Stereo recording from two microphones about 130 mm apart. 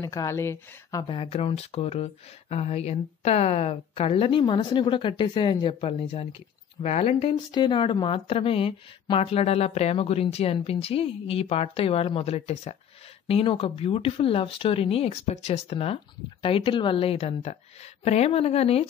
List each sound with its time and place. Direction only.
0.0 s speech: 25° left (ahead or behind)
1.0 s a woman's voice: 45° left (ahead or behind)
7.5 s a woman's voice: 40° left (ahead or behind)